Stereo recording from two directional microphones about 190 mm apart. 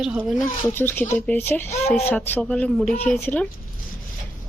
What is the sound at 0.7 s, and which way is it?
Speech, 10° left (ahead or behind).